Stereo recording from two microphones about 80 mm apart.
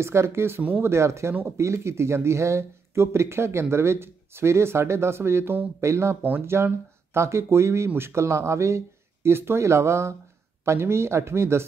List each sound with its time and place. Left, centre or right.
0.0 s speech: right
0.9 s speech: right